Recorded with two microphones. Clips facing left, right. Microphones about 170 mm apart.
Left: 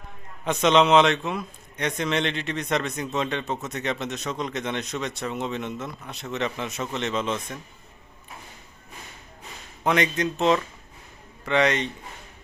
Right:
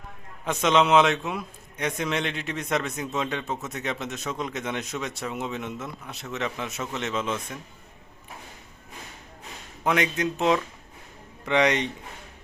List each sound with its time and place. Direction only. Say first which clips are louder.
0.4 s a man's voice: left 2 dB; 5° right (ahead or behind)
9.8 s speech: left 1 dB; 5° right (ahead or behind)